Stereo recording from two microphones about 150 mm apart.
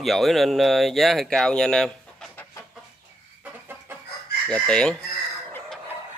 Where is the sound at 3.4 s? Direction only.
15° right (ahead or behind).